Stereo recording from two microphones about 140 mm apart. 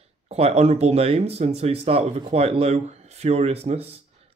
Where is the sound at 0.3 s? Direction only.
50° right (ahead or behind).